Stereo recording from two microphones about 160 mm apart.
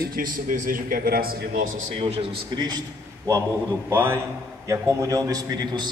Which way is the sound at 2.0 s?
35° right (ahead or behind).